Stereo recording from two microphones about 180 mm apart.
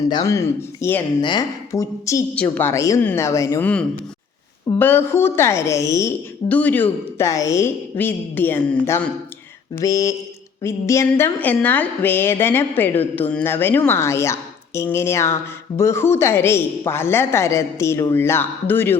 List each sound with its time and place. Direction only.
0.1 s a woman's voice: 20° left (ahead or behind)
1.2 s a woman's voice: 25° left (ahead or behind)
4.8 s a woman's voice: 10° left (ahead or behind)